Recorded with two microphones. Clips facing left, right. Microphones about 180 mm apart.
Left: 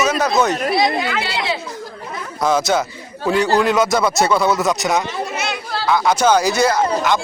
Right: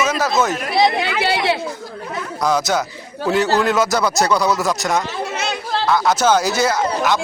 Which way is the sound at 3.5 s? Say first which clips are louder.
Left 1 dB; 15° left (ahead or behind).